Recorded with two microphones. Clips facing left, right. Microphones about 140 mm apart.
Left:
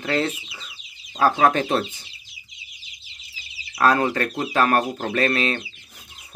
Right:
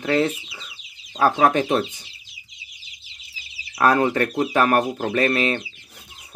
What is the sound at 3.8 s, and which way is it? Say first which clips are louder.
Speech: right 1 dB; 20° right (ahead or behind).